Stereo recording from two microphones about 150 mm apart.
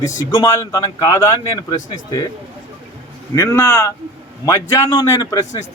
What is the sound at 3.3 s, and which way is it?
Speech, 15° left (ahead or behind).